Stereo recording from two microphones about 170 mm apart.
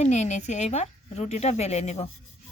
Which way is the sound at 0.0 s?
40° left (ahead or behind).